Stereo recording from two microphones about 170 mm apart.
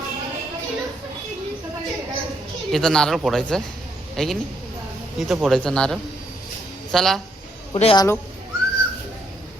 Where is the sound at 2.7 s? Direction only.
Centre (ahead or behind).